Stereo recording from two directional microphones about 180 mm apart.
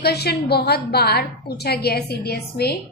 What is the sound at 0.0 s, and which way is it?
A woman's voice, 60° left (ahead or behind).